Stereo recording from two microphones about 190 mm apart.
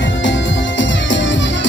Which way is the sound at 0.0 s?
75° left (ahead or behind).